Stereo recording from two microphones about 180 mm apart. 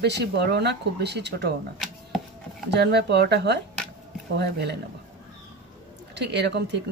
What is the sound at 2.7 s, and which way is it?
Speech, 65° right (ahead or behind).